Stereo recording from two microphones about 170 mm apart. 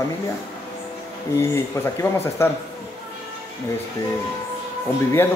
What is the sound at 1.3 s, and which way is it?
Speech, 15° left (ahead or behind).